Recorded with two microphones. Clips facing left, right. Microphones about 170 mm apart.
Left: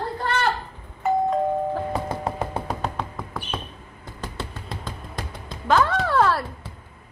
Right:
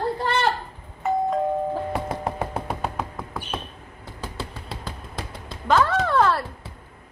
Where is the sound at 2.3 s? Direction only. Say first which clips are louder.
Even; 5° right (ahead or behind).